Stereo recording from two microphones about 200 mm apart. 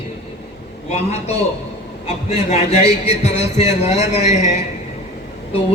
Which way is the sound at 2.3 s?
35° left (ahead or behind).